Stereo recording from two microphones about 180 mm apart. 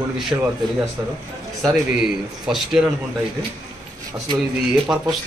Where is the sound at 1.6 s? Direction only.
5° right (ahead or behind).